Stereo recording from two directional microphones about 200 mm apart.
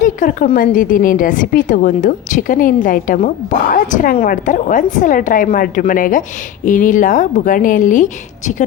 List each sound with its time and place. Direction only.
0.0 s a woman's voice: 40° left (ahead or behind)